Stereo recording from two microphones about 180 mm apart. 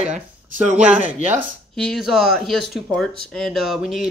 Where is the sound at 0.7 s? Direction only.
5° right (ahead or behind).